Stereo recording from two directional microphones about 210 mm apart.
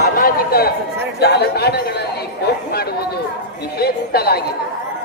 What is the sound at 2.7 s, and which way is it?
Chatter, 50° left (ahead or behind).